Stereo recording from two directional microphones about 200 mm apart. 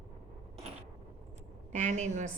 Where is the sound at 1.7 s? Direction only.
35° right (ahead or behind).